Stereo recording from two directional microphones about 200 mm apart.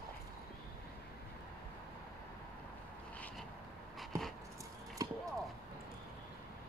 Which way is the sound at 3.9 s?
Centre (ahead or behind).